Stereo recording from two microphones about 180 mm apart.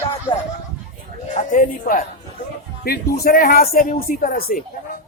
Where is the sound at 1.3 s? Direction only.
45° left (ahead or behind).